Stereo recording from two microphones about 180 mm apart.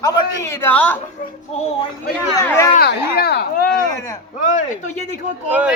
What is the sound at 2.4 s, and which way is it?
Speech, 15° left (ahead or behind).